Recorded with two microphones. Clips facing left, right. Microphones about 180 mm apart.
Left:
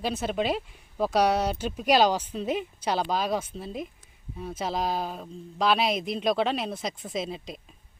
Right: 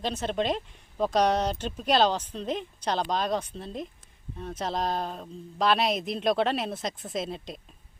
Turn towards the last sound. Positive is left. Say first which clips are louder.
# even
turn(degrees=0)  # may be behind; listen again after turning